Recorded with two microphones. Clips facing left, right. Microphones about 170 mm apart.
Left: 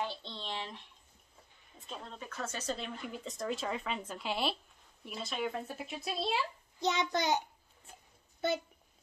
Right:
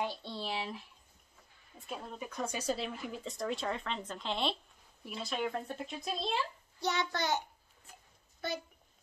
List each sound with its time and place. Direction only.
0.0 s a sound: 10° right (ahead or behind)
1.9 s speech: 10° right (ahead or behind); by 6.4 s 5° left (ahead or behind)
6.8 s a child's voice: 20° left (ahead or behind)